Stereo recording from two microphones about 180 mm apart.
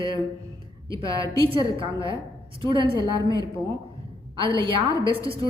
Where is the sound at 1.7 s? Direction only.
30° right (ahead or behind).